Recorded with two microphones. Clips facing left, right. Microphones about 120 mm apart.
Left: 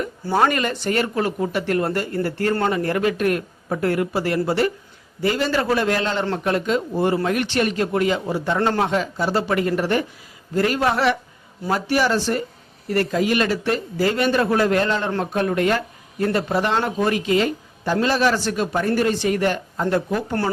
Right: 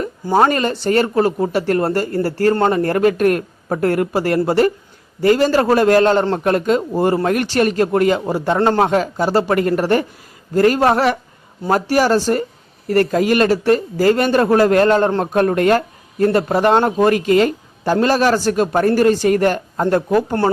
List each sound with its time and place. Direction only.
0.3 s speech: 35° right (ahead or behind)